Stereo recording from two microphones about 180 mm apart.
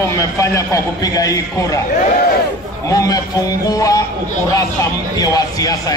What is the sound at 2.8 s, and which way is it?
Speech, 20° left (ahead or behind).